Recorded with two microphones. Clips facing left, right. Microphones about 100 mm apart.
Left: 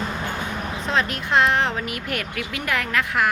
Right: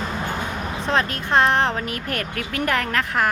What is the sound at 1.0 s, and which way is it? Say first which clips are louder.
Speech: even; 30° right (ahead or behind).